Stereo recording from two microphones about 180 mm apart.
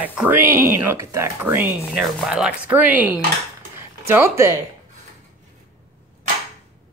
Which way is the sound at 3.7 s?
15° right (ahead or behind).